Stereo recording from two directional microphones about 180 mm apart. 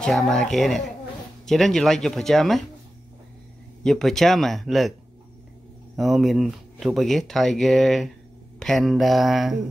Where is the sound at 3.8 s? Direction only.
Centre (ahead or behind).